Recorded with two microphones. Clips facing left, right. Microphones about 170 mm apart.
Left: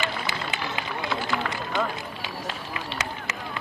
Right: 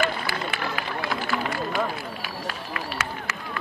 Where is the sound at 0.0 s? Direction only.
20° left (ahead or behind).